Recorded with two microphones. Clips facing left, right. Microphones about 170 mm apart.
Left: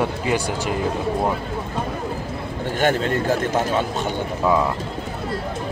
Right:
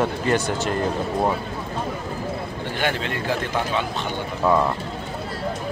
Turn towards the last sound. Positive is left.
turn(degrees=45)  # may be behind; listen again after turning